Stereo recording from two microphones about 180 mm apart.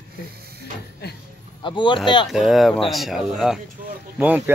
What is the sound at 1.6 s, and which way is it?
Speech, 25° left (ahead or behind).